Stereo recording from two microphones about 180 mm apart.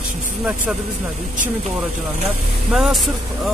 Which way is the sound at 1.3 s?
45° right (ahead or behind).